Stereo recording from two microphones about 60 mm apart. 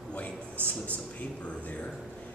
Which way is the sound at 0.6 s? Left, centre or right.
Left.